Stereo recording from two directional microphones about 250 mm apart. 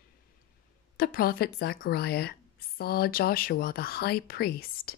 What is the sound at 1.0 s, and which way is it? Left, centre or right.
A woman's voice, left.